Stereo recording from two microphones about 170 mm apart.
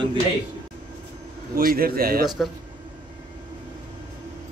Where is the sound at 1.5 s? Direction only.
60° right (ahead or behind).